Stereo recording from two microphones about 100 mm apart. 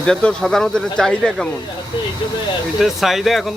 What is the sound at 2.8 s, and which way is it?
Speech, centre (ahead or behind).